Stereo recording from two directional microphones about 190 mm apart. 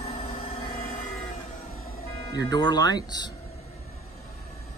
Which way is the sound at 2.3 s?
20° left (ahead or behind).